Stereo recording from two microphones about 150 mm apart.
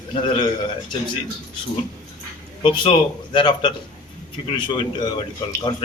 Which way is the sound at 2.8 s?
30° left (ahead or behind).